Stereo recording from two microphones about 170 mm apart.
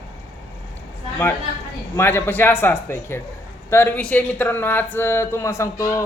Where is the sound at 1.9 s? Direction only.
10° left (ahead or behind).